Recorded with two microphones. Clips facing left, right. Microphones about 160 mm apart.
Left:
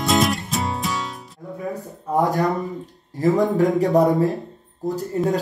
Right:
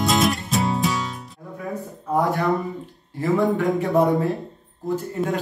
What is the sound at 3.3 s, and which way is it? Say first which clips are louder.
Speech: even; 40° left (ahead or behind).